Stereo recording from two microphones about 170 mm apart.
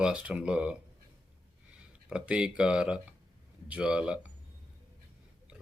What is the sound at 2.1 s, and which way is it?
Speech, 5° right (ahead or behind).